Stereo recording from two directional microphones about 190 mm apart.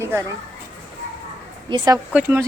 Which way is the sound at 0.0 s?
10° right (ahead or behind).